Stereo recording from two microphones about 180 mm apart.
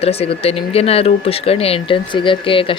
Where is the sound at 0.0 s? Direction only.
35° left (ahead or behind).